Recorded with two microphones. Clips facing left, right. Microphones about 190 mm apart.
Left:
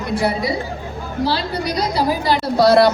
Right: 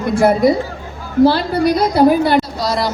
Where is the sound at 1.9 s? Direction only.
55° right (ahead or behind).